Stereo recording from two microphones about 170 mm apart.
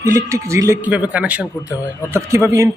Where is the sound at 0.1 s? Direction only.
20° right (ahead or behind).